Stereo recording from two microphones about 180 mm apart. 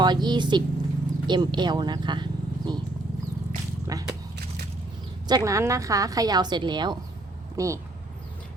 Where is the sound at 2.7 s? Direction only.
25° right (ahead or behind).